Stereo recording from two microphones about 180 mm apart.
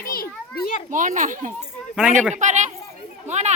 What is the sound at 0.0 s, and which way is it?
Children playing, 55° left (ahead or behind).